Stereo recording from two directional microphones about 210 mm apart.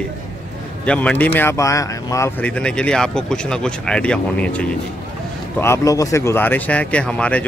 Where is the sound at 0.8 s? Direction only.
5° left (ahead or behind).